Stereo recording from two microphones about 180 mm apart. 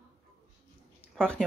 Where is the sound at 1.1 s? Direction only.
5° left (ahead or behind).